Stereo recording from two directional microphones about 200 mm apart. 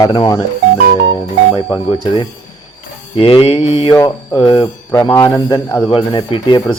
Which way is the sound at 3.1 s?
25° left (ahead or behind).